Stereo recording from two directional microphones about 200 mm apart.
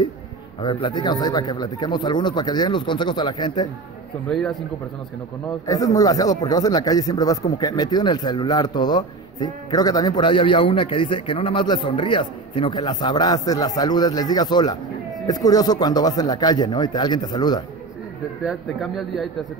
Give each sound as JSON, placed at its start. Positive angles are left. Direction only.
{"t": 0.6, "sound": "a man's voice", "side_deg": 25}
{"t": 4.3, "sound": "a man's voice", "side_deg": 5}
{"t": 5.7, "sound": "a man's voice", "side_deg": 20}
{"t": 18.4, "sound": "a man's voice", "side_deg": 0}